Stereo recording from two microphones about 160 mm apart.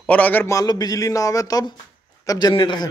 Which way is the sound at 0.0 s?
10° left (ahead or behind).